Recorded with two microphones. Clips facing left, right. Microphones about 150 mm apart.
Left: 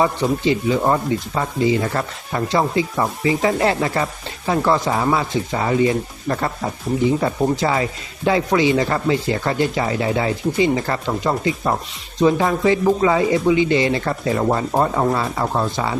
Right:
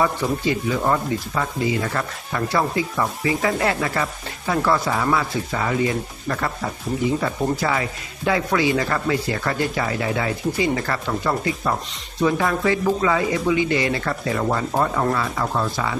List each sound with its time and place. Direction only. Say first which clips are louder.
0.4 s speech: left 4 dB; 25° left (ahead or behind)